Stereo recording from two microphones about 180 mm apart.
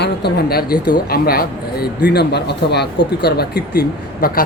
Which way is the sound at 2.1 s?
65° left (ahead or behind).